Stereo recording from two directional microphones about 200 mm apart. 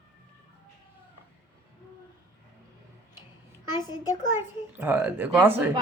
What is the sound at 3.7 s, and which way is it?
Speech, 20° left (ahead or behind).